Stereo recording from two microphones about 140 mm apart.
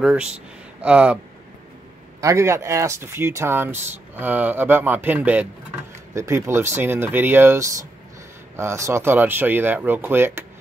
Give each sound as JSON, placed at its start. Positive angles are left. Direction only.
{"t": 0.0, "sound": "speech", "side_deg": -5}
{"t": 2.2, "sound": "speech", "side_deg": -20}